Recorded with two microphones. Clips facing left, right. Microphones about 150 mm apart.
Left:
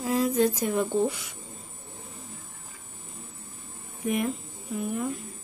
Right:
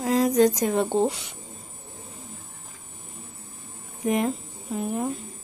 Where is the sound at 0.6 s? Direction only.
85° right.